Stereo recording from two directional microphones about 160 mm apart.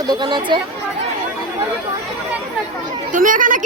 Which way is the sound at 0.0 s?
25° right (ahead or behind).